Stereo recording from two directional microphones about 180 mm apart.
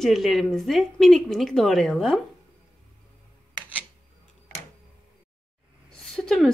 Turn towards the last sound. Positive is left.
turn(degrees=0)  # may be behind; listen again after turning